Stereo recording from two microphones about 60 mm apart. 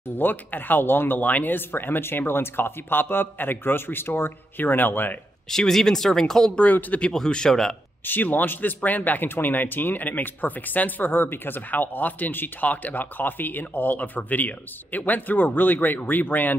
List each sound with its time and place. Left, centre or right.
0.1 s a man's voice: left
5.5 s speech: centre
6.6 s speech: left
7.1 s speech: centre
8.0 s a man's voice: left